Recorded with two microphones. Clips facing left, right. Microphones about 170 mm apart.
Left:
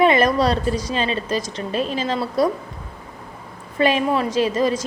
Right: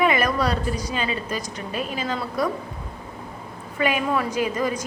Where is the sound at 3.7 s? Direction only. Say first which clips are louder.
Left 4 dB; 30° left (ahead or behind).